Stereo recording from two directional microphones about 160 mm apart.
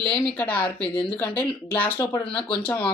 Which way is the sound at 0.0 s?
5° left (ahead or behind).